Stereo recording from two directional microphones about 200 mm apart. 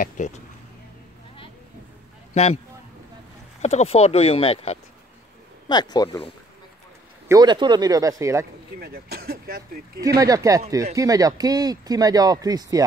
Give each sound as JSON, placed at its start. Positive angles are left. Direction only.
{"t": 0.2, "sound": "speech", "side_deg": 40}
{"t": 2.3, "sound": "speech", "side_deg": 30}
{"t": 3.6, "sound": "speech", "side_deg": 30}
{"t": 7.2, "sound": "speech", "side_deg": -20}
{"t": 8.7, "sound": "speech", "side_deg": -50}
{"t": 9.9, "sound": "speech", "side_deg": -15}